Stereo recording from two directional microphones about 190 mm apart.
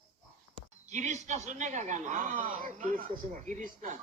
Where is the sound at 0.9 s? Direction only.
40° right (ahead or behind).